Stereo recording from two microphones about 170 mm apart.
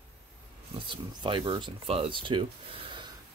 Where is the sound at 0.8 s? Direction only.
30° right (ahead or behind).